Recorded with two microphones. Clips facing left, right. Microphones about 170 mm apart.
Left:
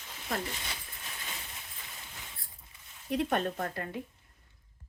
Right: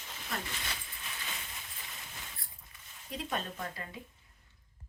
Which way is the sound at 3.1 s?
60° left (ahead or behind).